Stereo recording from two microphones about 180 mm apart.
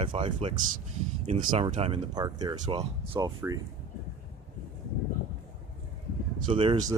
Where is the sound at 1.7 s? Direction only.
30° right (ahead or behind).